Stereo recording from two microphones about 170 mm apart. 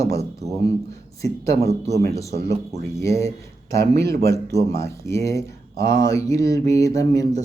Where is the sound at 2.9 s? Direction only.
20° left (ahead or behind).